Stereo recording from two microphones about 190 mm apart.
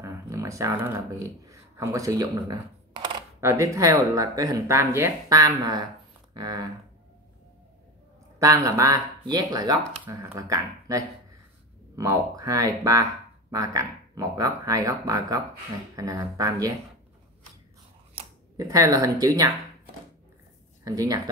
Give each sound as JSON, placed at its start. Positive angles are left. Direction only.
{"t": 0.0, "sound": "speech", "side_deg": -15}
{"t": 8.4, "sound": "speech", "side_deg": -15}
{"t": 18.2, "sound": "camera", "side_deg": -30}
{"t": 18.6, "sound": "speech", "side_deg": -20}
{"t": 20.8, "sound": "speech", "side_deg": -20}